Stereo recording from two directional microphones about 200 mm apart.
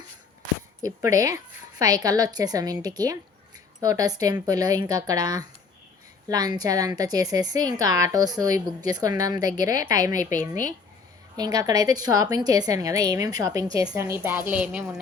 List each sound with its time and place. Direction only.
0.8 s a woman's voice: 15° right (ahead or behind)
10.2 s a woman's voice: 40° left (ahead or behind)
11.3 s a woman's voice: 20° right (ahead or behind)